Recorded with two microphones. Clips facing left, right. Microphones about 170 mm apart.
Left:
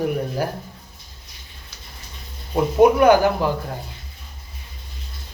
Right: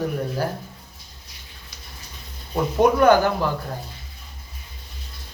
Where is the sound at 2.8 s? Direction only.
10° left (ahead or behind).